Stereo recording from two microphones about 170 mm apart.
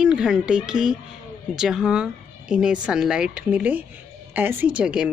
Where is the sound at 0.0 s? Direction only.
5° right (ahead or behind).